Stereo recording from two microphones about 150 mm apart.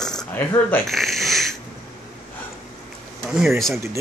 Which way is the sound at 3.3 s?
Centre (ahead or behind).